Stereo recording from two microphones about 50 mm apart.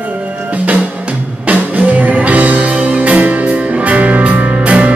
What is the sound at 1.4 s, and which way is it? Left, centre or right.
Music, right.